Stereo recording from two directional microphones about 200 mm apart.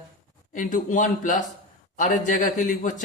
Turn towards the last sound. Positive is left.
turn(degrees=40)  # may be behind; listen again after turning